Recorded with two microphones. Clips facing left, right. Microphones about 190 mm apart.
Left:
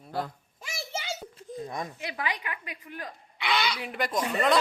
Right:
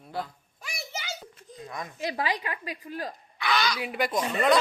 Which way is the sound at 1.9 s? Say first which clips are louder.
Right 4 dB; 35° right (ahead or behind).